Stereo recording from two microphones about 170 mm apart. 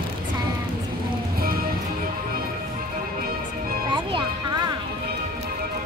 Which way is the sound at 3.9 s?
30° right (ahead or behind).